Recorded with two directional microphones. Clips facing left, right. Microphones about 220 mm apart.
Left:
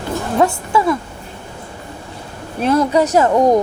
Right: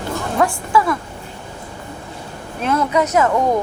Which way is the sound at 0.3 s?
20° left (ahead or behind).